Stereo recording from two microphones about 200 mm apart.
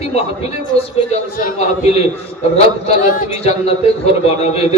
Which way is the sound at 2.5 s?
35° left (ahead or behind).